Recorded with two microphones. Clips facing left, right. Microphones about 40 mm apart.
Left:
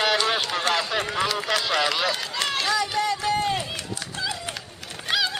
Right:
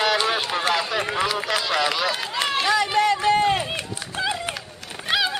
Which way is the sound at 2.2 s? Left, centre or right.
Centre.